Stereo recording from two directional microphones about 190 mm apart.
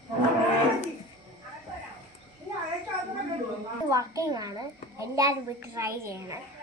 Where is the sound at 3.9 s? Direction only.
15° right (ahead or behind).